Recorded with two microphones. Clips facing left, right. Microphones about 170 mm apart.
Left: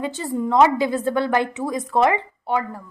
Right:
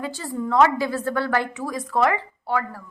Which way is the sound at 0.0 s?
20° left (ahead or behind).